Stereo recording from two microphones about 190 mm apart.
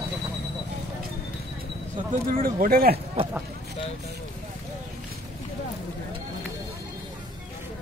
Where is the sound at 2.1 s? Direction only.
45° right (ahead or behind).